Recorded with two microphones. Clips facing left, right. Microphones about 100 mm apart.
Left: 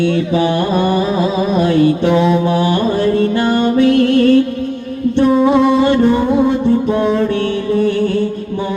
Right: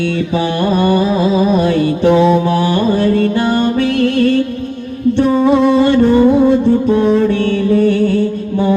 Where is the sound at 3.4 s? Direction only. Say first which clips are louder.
Left 1 dB; 20° left (ahead or behind).